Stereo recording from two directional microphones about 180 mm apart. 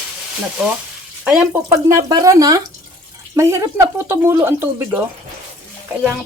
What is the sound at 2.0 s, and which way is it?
Speech, 20° right (ahead or behind).